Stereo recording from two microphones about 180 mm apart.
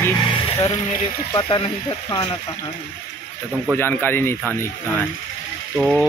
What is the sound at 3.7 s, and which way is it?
Speech, 10° left (ahead or behind).